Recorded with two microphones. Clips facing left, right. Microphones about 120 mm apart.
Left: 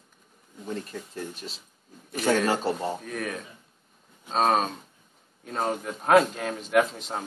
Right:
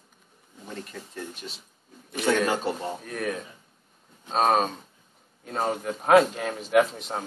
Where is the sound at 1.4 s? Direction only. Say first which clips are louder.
Even; 25° left (ahead or behind).